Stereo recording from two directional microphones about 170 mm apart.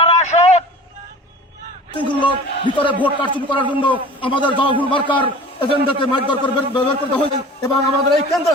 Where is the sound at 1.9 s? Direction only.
30° left (ahead or behind).